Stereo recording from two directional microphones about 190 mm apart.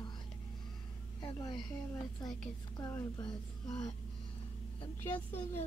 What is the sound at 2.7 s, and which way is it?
Speech, 15° left (ahead or behind).